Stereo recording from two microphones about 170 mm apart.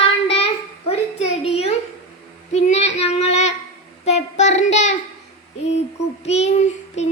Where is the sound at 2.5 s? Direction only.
40° left (ahead or behind).